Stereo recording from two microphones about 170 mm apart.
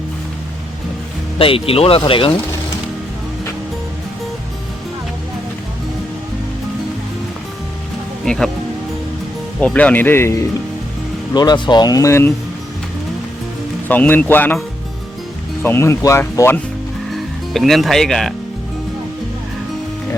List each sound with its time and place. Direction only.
1.4 s speech: 35° left (ahead or behind)
8.2 s speech: 5° left (ahead or behind)
9.6 s speech: 5° left (ahead or behind)
13.8 s speech: 10° left (ahead or behind)
15.6 s speech: 15° left (ahead or behind)
17.1 s speech: centre (ahead or behind)